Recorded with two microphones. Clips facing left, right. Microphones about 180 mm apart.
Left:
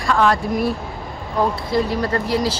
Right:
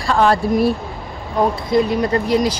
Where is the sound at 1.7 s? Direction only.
20° right (ahead or behind).